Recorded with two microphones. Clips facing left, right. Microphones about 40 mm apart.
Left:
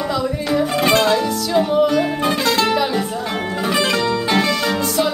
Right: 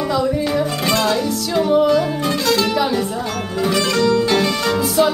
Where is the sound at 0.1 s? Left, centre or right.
Centre.